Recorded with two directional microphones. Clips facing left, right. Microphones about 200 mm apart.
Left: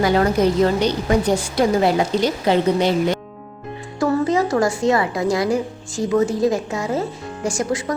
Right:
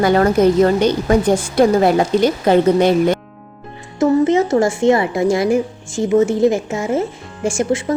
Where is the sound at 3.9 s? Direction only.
25° right (ahead or behind).